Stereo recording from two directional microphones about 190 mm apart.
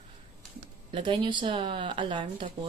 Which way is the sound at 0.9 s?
25° right (ahead or behind).